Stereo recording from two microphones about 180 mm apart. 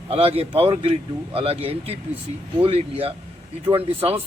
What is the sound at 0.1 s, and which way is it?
A man's voice, 35° right (ahead or behind).